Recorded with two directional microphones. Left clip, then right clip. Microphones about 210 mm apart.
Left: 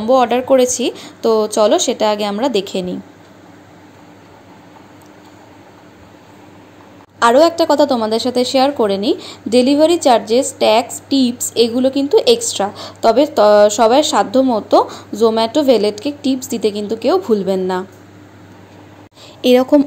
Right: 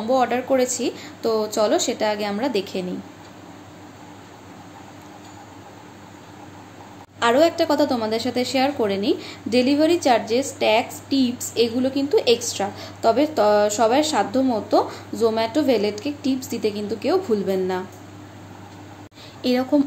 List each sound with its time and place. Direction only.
0.0 s a woman's voice: 35° left (ahead or behind)
7.2 s a woman's voice: 30° left (ahead or behind)
19.4 s a woman's voice: 35° left (ahead or behind)